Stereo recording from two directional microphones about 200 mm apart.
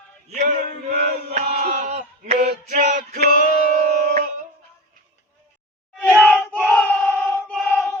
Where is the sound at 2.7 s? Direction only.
35° right (ahead or behind).